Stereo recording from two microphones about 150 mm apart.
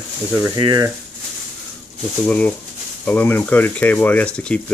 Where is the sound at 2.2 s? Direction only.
10° left (ahead or behind).